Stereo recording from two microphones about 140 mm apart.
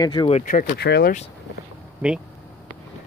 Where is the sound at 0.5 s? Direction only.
75° left (ahead or behind).